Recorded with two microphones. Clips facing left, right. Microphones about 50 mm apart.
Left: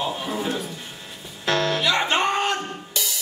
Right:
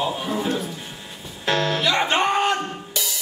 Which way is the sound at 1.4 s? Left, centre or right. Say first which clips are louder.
Even; centre.